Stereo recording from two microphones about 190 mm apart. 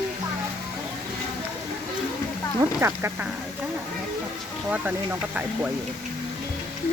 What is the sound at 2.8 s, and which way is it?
Speech, 15° right (ahead or behind).